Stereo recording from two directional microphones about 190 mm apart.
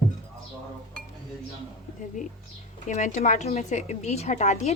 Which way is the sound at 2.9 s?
40° left (ahead or behind).